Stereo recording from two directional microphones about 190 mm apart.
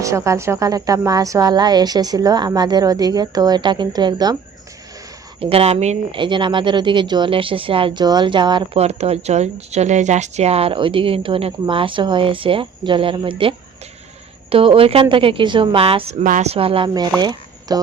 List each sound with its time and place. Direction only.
0.0 s speech: 15° right (ahead or behind)
5.4 s speech: 30° right (ahead or behind)
17.2 s a sound: 20° right (ahead or behind)